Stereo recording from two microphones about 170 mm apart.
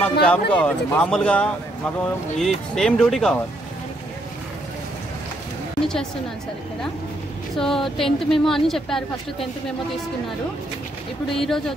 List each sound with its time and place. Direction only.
0.0 s a woman's voice: 10° left (ahead or behind)
7.5 s a woman's voice: centre (ahead or behind)
11.3 s a woman's voice: centre (ahead or behind)